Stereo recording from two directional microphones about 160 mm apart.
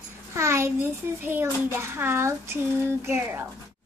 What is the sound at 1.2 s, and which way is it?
A child's voice, 15° right (ahead or behind).